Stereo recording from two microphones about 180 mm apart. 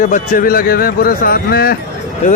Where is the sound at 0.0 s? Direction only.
50° left (ahead or behind).